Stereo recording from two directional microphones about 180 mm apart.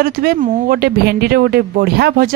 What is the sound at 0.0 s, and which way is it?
Speech, 55° right (ahead or behind).